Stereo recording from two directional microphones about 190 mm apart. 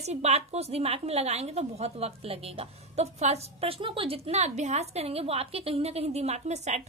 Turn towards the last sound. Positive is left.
turn(degrees=-35)  # may be behind; listen again after turning